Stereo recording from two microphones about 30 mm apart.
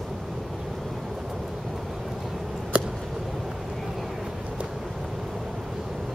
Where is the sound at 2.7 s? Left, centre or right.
Right.